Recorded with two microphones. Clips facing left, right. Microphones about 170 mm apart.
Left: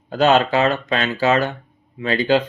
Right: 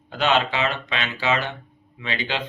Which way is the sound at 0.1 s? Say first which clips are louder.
Left 6 dB; 40° left (ahead or behind).